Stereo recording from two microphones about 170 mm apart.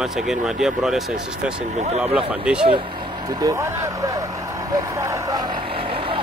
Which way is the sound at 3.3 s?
20° right (ahead or behind).